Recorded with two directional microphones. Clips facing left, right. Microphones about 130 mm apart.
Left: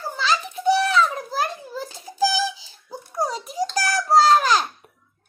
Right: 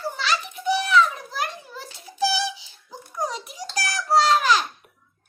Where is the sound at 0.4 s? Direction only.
35° left (ahead or behind).